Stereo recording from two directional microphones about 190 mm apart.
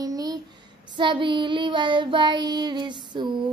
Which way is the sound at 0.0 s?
20° right (ahead or behind).